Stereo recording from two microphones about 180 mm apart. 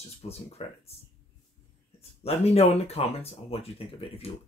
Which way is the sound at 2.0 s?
35° left (ahead or behind).